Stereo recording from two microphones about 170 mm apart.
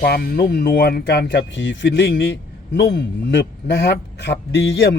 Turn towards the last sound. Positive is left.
turn(degrees=75)  # may be behind; listen again after turning